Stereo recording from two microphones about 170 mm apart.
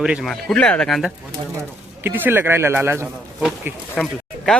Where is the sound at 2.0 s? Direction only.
10° right (ahead or behind).